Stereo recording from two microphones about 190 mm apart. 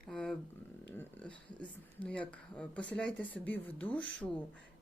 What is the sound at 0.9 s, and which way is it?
Speech, 5° left (ahead or behind).